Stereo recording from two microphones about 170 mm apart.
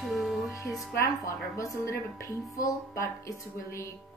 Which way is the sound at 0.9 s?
20° left (ahead or behind).